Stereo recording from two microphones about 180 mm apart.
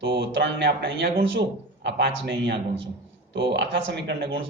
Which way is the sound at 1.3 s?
75° right (ahead or behind).